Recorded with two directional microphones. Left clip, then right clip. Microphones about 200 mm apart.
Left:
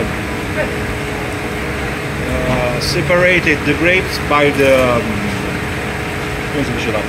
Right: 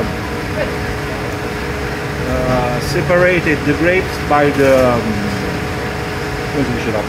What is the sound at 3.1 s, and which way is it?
Speech, 20° right (ahead or behind).